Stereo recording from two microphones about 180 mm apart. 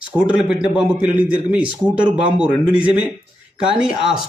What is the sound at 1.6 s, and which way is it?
A woman's voice, 5° right (ahead or behind).